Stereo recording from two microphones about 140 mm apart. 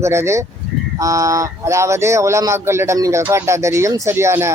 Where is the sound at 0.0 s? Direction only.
20° right (ahead or behind).